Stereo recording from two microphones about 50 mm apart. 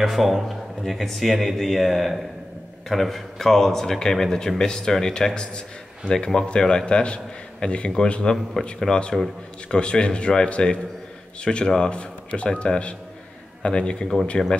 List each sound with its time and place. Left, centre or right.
0.0 s speech: centre